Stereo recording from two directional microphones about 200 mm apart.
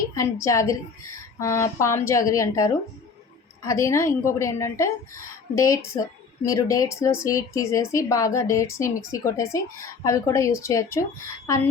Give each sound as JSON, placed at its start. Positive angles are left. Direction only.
{"t": 0.1, "sound": "a woman's voice", "side_deg": 15}